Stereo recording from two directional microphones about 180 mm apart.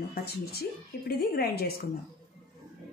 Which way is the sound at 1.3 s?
60° left (ahead or behind).